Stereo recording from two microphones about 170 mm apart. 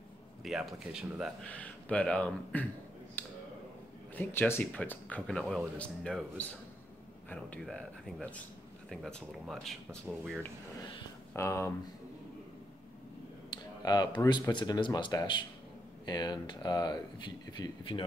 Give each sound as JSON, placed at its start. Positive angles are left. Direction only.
{"t": 0.4, "sound": "speech", "side_deg": 0}
{"t": 1.4, "sound": "speech", "side_deg": 10}
{"t": 3.2, "sound": "a sound", "side_deg": 10}
{"t": 4.1, "sound": "speech", "side_deg": 10}
{"t": 11.3, "sound": "speech", "side_deg": 15}
{"t": 14.3, "sound": "speech", "side_deg": 25}